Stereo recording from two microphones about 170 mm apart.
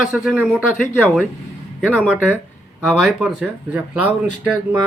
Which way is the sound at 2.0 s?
5° right (ahead or behind).